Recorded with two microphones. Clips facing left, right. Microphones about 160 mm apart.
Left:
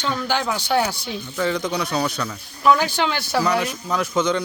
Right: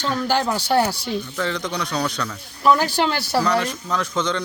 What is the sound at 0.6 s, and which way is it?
Speech, 35° right (ahead or behind).